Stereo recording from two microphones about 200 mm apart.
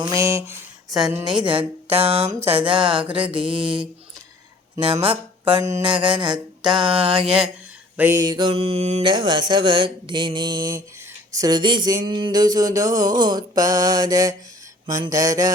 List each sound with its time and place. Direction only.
0.0 s speech: 15° right (ahead or behind)
0.9 s a woman's voice: centre (ahead or behind)
1.4 s music: 25° right (ahead or behind)
7.9 s music: 10° right (ahead or behind)
14.8 s mantra: 15° right (ahead or behind)